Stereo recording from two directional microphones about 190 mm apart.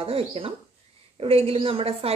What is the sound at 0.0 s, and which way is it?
A woman's voice, 30° right (ahead or behind).